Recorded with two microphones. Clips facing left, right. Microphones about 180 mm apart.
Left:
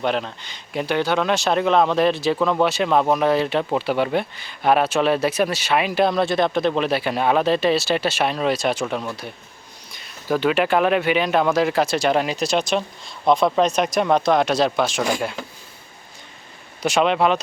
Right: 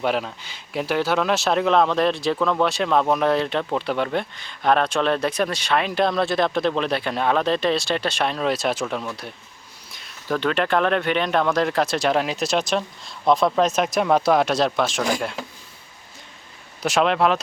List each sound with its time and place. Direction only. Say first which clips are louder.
0.0 s speech: even; 5° right (ahead or behind)
16.8 s speech: left 1 dB; centre (ahead or behind)